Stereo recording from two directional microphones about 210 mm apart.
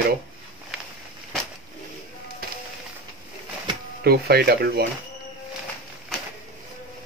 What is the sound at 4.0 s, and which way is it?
Speech, 50° right (ahead or behind).